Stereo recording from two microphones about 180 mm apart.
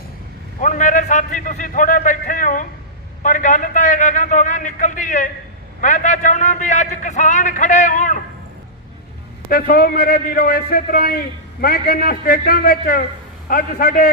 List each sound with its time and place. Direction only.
0.6 s a man's voice: 45° left (ahead or behind)
3.2 s a sound: 45° left (ahead or behind)
5.8 s a man's voice: 45° left (ahead or behind)
9.5 s a man's voice: 55° left (ahead or behind)